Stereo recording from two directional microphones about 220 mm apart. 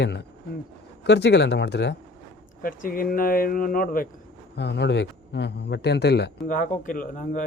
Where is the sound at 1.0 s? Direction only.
50° left (ahead or behind).